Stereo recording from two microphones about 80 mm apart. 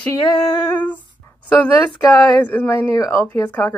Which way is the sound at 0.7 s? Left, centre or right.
Left.